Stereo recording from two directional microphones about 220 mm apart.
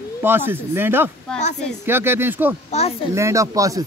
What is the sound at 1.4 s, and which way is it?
Speech, 30° left (ahead or behind).